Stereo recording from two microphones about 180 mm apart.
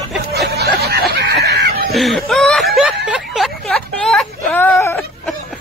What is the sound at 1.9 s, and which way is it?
Snicker, centre (ahead or behind).